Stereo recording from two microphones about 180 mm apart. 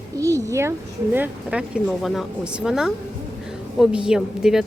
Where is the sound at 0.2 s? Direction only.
15° right (ahead or behind).